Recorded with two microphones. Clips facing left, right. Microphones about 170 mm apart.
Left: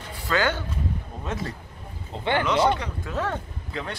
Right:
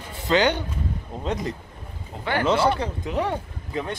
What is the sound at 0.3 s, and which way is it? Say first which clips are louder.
Speech: right 4 dB; 20° right (ahead or behind).